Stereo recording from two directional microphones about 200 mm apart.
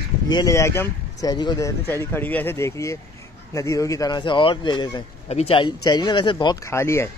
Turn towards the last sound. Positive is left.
turn(degrees=15)  # may be behind; listen again after turning